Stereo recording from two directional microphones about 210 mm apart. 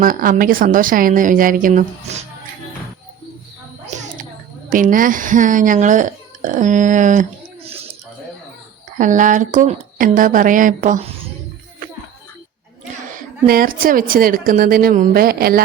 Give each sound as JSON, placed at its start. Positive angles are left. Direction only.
{"t": 0.0, "sound": "a woman's voice", "side_deg": -40}
{"t": 3.9, "sound": "a sound", "side_deg": -35}
{"t": 4.7, "sound": "a woman's voice", "side_deg": -40}
{"t": 9.0, "sound": "a woman's voice", "side_deg": -40}
{"t": 13.1, "sound": "speech", "side_deg": -40}